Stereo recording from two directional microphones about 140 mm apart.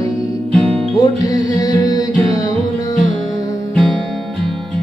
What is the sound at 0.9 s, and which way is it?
Music, 25° left (ahead or behind).